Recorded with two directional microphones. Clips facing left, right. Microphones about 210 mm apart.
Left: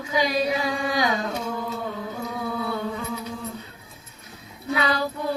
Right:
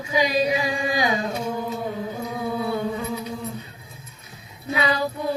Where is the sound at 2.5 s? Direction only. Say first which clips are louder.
Right 4 dB; 20° right (ahead or behind).